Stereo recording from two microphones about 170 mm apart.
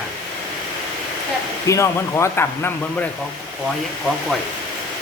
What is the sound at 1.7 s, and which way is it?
Speech, 15° left (ahead or behind).